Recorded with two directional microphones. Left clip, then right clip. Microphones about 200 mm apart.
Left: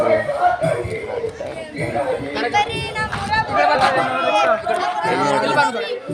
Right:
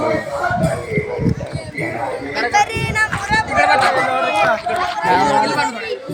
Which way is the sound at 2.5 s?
45° right (ahead or behind).